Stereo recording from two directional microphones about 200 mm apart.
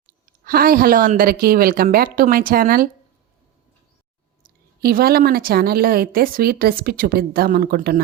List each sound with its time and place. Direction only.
0.4 s a woman's voice: 45° right (ahead or behind)
4.4 s a woman's voice: 45° right (ahead or behind)